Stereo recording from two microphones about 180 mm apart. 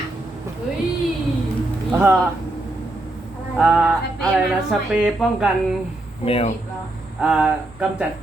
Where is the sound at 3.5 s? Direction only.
5° right (ahead or behind).